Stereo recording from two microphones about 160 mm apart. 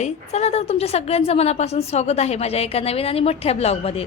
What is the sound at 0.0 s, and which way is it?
A woman's voice, 45° left (ahead or behind).